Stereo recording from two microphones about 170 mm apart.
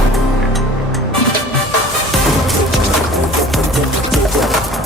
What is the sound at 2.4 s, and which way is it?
Music, centre (ahead or behind).